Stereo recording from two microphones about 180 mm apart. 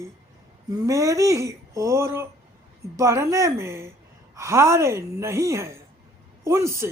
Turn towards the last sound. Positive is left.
turn(degrees=-15)  # may be behind; listen again after turning